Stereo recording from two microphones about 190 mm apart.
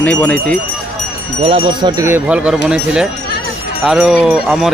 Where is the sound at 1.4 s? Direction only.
30° right (ahead or behind).